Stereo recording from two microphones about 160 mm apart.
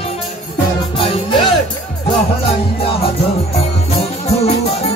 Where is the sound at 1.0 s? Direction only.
30° left (ahead or behind).